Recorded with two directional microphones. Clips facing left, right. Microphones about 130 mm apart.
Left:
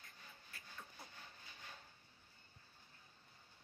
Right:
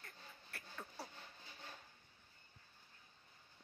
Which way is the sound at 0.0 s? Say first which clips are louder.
Right 3 dB; 65° right (ahead or behind).